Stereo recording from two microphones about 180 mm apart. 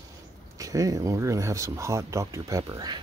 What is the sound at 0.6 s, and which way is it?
Speech, 20° right (ahead or behind).